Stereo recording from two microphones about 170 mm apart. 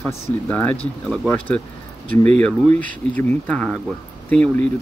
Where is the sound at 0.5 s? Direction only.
10° left (ahead or behind).